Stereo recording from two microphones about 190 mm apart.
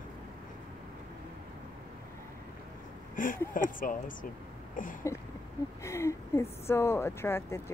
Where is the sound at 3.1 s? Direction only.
45° left (ahead or behind).